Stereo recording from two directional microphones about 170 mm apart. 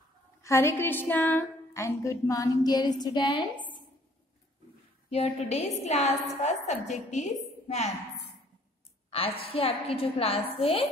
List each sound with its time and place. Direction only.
0.4 s a woman's voice: 15° left (ahead or behind)
5.1 s a woman's voice: 40° left (ahead or behind)
9.1 s a woman's voice: 35° left (ahead or behind)